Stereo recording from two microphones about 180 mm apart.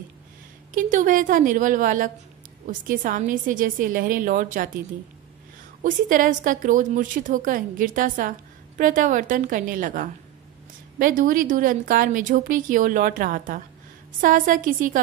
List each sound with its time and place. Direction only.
0.7 s a woman's voice: 45° right (ahead or behind)
5.8 s a woman's voice: 45° right (ahead or behind)